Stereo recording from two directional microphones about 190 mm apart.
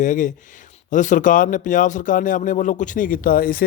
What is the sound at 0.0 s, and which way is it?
A man's voice, 40° left (ahead or behind).